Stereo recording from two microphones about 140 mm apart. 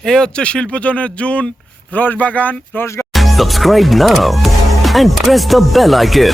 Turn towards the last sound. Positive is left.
turn(degrees=0)  # may be behind; listen again after turning